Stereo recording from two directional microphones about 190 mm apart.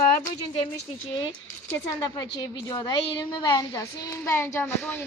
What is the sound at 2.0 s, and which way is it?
A woman's voice, 20° left (ahead or behind).